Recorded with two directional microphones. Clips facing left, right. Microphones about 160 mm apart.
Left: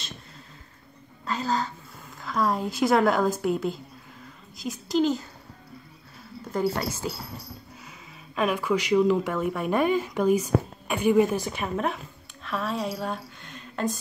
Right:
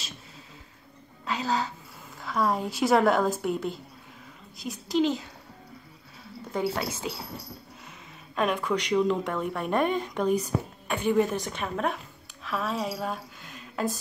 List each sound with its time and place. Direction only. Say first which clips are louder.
1.2 s a woman's voice: left 1 dB; centre (ahead or behind)
6.5 s speech: left 2 dB; centre (ahead or behind)
8.4 s speech: left 2 dB; 5° left (ahead or behind)
10.5 s a woman's voice: left 5 dB; 60° left (ahead or behind)
10.9 s a woman's voice: left 3 dB; 10° left (ahead or behind)